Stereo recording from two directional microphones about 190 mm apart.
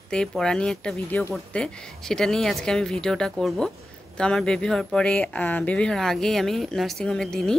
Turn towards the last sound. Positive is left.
turn(degrees=5)  # may be behind; listen again after turning